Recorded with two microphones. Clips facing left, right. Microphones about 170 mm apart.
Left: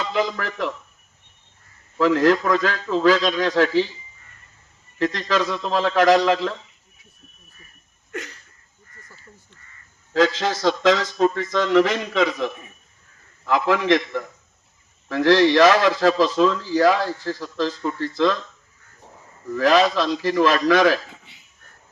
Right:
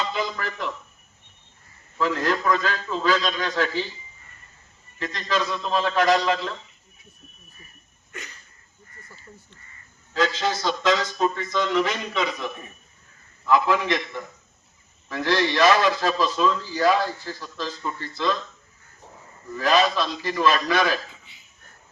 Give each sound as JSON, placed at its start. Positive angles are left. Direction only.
{"t": 0.1, "sound": "a sound", "side_deg": 85}
{"t": 2.0, "sound": "a man's voice", "side_deg": 85}
{"t": 4.9, "sound": "a man's voice", "side_deg": 90}
{"t": 8.1, "sound": "a sound", "side_deg": 90}
{"t": 10.2, "sound": "a man's voice", "side_deg": 90}
{"t": 13.5, "sound": "a man's voice", "side_deg": 90}
{"t": 19.5, "sound": "a man's voice", "side_deg": 90}